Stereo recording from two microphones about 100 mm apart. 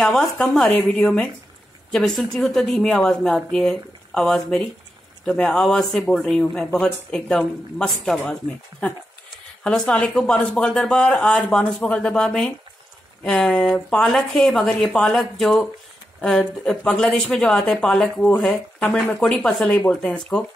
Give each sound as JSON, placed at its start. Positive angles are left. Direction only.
{"t": 0.0, "sound": "speech", "side_deg": 5}
{"t": 0.7, "sound": "speech", "side_deg": 15}
{"t": 9.6, "sound": "speech", "side_deg": 5}
{"t": 18.2, "sound": "speech", "side_deg": 15}